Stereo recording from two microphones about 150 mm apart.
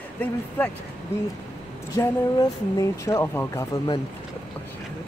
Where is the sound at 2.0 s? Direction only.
25° left (ahead or behind).